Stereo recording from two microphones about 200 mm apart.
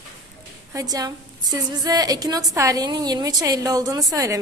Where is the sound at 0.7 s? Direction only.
15° right (ahead or behind).